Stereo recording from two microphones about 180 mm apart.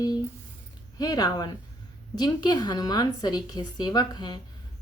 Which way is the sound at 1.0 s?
20° left (ahead or behind).